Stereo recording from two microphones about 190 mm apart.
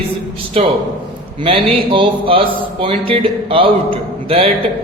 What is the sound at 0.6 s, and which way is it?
Speech, 30° right (ahead or behind).